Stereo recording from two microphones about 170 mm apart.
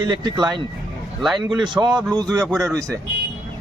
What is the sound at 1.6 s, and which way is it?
Speech, 25° right (ahead or behind).